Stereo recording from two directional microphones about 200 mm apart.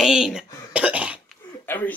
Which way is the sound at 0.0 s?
5° right (ahead or behind).